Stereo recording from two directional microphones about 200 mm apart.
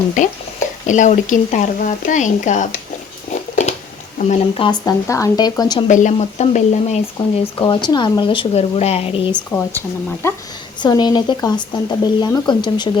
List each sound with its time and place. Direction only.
0.2 s speech: 40° left (ahead or behind)
3.5 s a sound: 35° left (ahead or behind)
4.3 s speech: 25° left (ahead or behind)
5.9 s speech: 40° left (ahead or behind)
7.6 s speech: 20° left (ahead or behind)
9.3 s speech: 10° left (ahead or behind)
10.8 s speech: 20° left (ahead or behind)